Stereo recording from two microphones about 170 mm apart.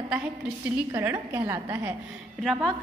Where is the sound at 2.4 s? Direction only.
Centre (ahead or behind).